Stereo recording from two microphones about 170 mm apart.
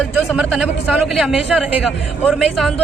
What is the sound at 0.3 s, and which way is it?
A man's voice, 5° right (ahead or behind).